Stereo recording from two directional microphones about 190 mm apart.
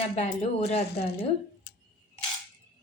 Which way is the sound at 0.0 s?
35° left (ahead or behind).